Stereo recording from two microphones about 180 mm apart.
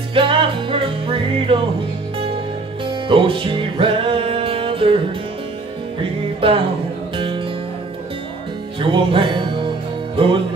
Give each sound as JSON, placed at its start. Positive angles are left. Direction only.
{"t": 0.1, "sound": "music", "side_deg": -30}
{"t": 2.8, "sound": "music", "side_deg": -30}
{"t": 8.7, "sound": "music", "side_deg": -30}